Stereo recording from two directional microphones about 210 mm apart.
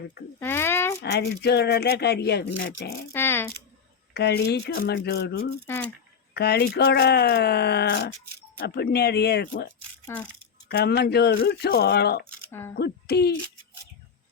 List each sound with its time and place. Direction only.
0.3 s a sound: 10° left (ahead or behind)
1.1 s speech: 50° left (ahead or behind)
3.1 s a sound: 10° left (ahead or behind)
4.1 s speech: 50° left (ahead or behind)
5.6 s speech: 10° left (ahead or behind)
6.3 s speech: 50° left (ahead or behind)
10.1 s speech: 10° left (ahead or behind)
10.7 s speech: 50° left (ahead or behind)
12.5 s speech: 10° left (ahead or behind)
12.7 s speech: 50° left (ahead or behind)